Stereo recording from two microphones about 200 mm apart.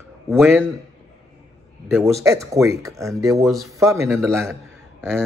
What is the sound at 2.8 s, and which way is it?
A man's voice, 15° right (ahead or behind).